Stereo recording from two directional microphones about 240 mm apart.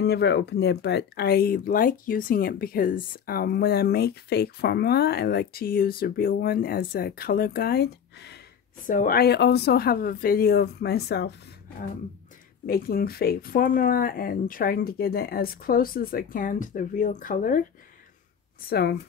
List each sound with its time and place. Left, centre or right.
0.0 s speech: left
12.6 s speech: left
18.7 s speech: left